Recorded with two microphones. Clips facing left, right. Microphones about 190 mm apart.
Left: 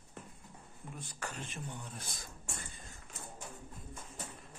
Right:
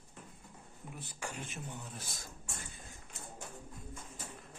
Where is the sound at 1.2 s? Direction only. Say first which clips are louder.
Even; 10° right (ahead or behind).